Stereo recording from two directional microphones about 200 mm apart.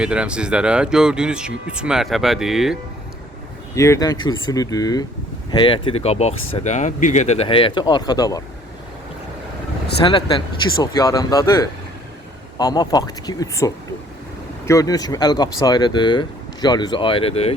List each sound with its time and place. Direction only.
0.0 s speech: 5° right (ahead or behind)
3.8 s speech: 15° left (ahead or behind)
10.0 s speech: 25° left (ahead or behind)